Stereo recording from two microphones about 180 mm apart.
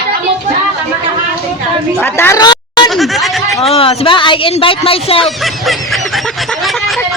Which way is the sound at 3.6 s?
35° left (ahead or behind).